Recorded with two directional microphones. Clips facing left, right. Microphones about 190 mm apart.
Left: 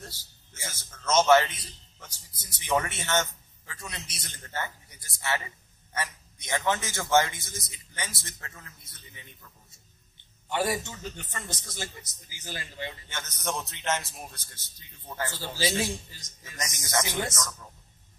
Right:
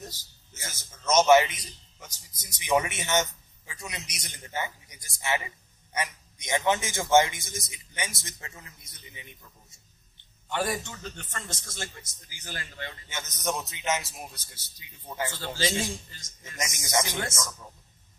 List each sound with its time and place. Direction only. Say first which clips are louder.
0.0 s a sound: right 3 dB; 15° right (ahead or behind)
1.1 s a man's voice: right 1 dB; 10° right (ahead or behind)
10.5 s a man's voice: left 1 dB; 15° left (ahead or behind)
13.1 s a man's voice: right 4 dB; 10° right (ahead or behind)
15.3 s speech: left 2 dB; 10° left (ahead or behind)
16.5 s a man's voice: right 2 dB; 20° right (ahead or behind)